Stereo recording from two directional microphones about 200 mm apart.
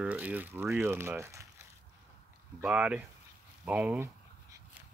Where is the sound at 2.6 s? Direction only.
5° right (ahead or behind).